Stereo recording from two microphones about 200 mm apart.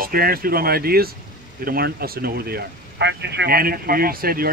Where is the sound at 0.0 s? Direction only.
45° right (ahead or behind).